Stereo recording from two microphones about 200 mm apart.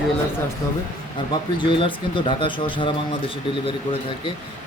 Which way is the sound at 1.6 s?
25° left (ahead or behind).